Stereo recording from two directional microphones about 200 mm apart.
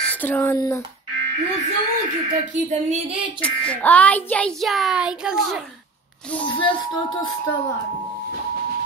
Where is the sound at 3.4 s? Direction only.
5° left (ahead or behind).